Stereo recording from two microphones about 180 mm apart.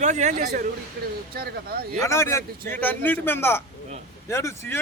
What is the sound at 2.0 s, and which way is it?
A man's voice, 15° left (ahead or behind).